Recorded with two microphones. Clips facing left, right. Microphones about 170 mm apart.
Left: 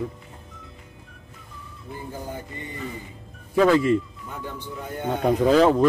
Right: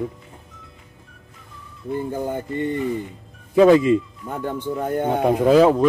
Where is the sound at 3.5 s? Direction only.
20° right (ahead or behind).